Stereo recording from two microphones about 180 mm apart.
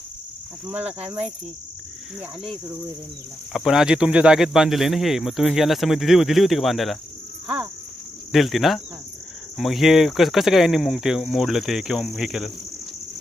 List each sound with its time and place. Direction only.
0.7 s cricket: 10° right (ahead or behind)
0.9 s insect: 35° right (ahead or behind)
3.5 s speech: centre (ahead or behind)
7.4 s insect: 5° right (ahead or behind)
8.3 s speech: centre (ahead or behind)